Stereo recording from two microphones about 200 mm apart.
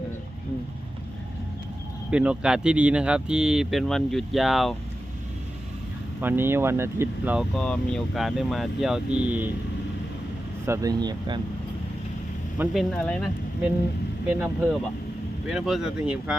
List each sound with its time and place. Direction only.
2.0 s speech: 5° right (ahead or behind)
6.2 s speech: 10° right (ahead or behind)
7.5 s speech: 5° left (ahead or behind)
10.7 s speech: 15° right (ahead or behind)
12.5 s speech: centre (ahead or behind)
14.3 s speech: 10° right (ahead or behind)